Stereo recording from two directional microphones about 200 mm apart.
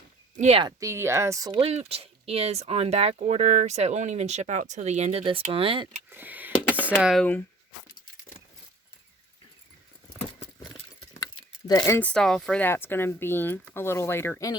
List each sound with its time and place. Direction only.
0.3 s speech: 30° right (ahead or behind)
0.8 s speech: 15° right (ahead or behind)
6.1 s a sound: 10° right (ahead or behind)
7.0 s speech: centre (ahead or behind)
10.2 s patter: 30° left (ahead or behind)
11.7 s speech: 15° left (ahead or behind)